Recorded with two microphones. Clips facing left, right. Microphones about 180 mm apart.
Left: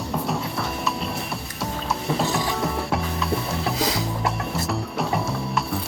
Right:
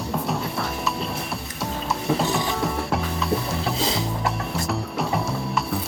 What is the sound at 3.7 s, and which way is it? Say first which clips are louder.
Music: left 2 dB; 25° right (ahead or behind).